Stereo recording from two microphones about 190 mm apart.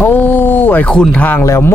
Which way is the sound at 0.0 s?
10° left (ahead or behind).